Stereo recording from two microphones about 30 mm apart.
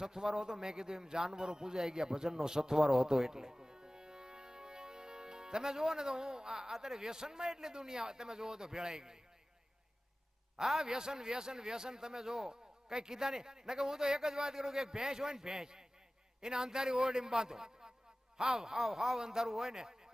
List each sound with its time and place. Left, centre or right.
0.0 s a man's voice: right
10.6 s a man's voice: centre
18.8 s speech: centre
19.2 s a man's voice: centre